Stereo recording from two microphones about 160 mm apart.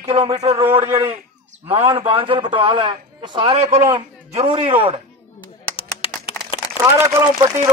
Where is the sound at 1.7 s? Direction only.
35° right (ahead or behind).